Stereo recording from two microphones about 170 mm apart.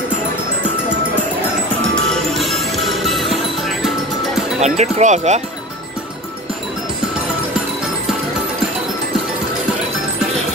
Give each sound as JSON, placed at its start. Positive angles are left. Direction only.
{"t": 2.3, "sound": "music", "side_deg": 0}
{"t": 4.6, "sound": "speech", "side_deg": -40}